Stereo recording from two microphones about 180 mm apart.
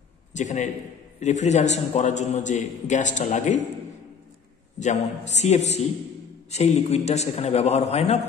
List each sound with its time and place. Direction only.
0.3 s a man's voice: 45° left (ahead or behind)
4.7 s a man's voice: 40° left (ahead or behind)